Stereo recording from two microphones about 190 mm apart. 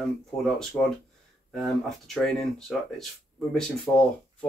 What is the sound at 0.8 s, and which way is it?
Speech, 10° left (ahead or behind).